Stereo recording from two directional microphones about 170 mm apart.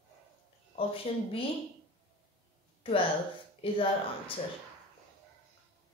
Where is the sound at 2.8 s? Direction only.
30° left (ahead or behind).